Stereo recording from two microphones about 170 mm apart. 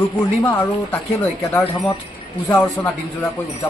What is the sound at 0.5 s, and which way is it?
Speech, 10° left (ahead or behind).